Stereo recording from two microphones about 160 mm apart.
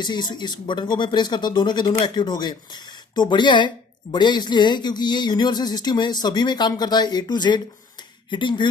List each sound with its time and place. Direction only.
0.0 s speech: 30° left (ahead or behind)